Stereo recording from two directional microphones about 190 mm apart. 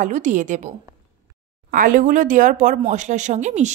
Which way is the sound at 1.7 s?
45° right (ahead or behind).